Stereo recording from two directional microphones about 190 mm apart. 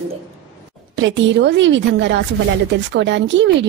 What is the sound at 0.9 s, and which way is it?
A woman's voice, 70° right (ahead or behind).